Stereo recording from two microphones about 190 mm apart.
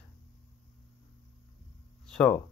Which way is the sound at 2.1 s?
5° left (ahead or behind).